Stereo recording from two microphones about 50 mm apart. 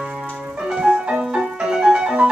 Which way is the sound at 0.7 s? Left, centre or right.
Centre.